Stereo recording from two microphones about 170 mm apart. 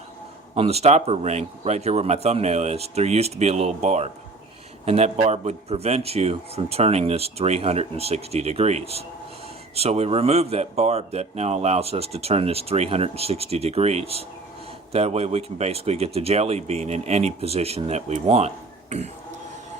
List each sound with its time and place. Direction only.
0.5 s speech: 35° right (ahead or behind)